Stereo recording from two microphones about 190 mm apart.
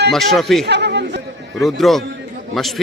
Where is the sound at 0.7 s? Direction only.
65° right (ahead or behind).